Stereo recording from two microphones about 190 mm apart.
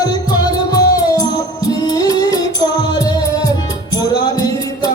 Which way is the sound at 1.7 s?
20° left (ahead or behind).